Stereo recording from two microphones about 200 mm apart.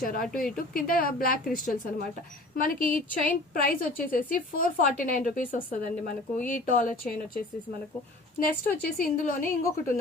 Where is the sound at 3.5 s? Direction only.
45° left (ahead or behind).